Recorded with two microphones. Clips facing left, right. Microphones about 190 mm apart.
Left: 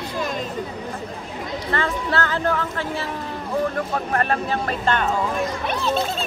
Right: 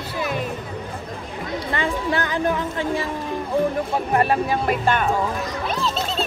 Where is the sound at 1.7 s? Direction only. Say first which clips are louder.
Even; 15° right (ahead or behind).